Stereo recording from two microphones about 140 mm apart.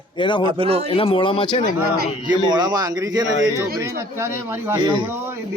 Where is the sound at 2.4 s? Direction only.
30° right (ahead or behind).